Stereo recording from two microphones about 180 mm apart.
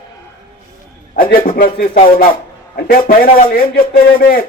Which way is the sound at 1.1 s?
50° left (ahead or behind).